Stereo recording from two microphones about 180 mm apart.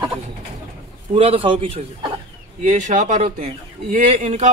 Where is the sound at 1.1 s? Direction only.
30° right (ahead or behind).